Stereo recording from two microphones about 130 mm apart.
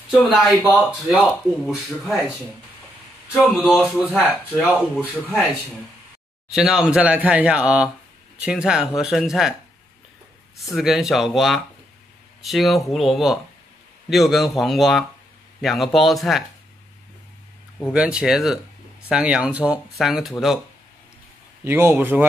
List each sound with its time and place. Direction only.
0.4 s speech: centre (ahead or behind)
3.3 s speech: centre (ahead or behind)
4.5 s speech: 5° right (ahead or behind)
6.5 s speech: 5° right (ahead or behind)
10.6 s speech: centre (ahead or behind)
17.9 s speech: 10° right (ahead or behind)
21.6 s speech: 15° right (ahead or behind)